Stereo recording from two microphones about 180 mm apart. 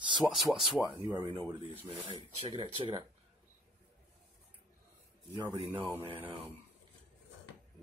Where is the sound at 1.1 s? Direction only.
25° right (ahead or behind).